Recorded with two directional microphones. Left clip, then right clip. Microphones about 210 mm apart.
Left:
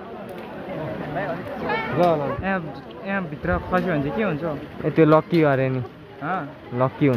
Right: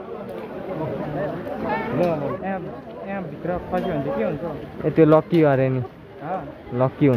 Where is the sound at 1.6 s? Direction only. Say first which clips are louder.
Left 3 dB; 55° left (ahead or behind).